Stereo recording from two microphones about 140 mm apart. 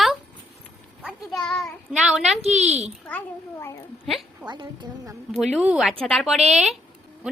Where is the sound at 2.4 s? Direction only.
50° right (ahead or behind).